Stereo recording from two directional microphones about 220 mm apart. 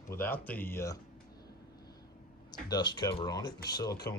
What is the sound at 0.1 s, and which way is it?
Speech, 10° left (ahead or behind).